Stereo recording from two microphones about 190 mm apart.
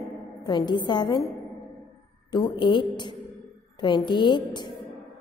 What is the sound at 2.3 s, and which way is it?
A woman's voice, 20° left (ahead or behind).